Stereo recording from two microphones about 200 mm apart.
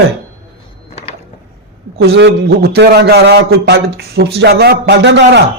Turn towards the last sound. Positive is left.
turn(degrees=-60)  # may be behind; listen again after turning